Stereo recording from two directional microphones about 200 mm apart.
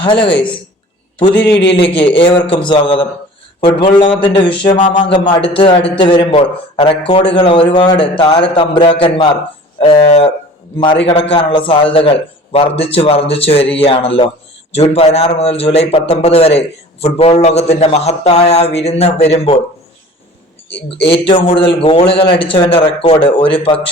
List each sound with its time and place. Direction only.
0.0 s a man's voice: 25° left (ahead or behind)
2.1 s a man's voice: 25° left (ahead or behind)
20.7 s a man's voice: 25° left (ahead or behind)